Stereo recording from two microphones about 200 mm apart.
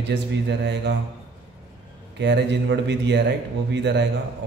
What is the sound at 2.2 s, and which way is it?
A man's voice, 60° right (ahead or behind).